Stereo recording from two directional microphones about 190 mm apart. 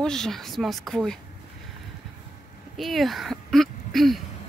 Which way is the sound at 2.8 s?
Centre (ahead or behind).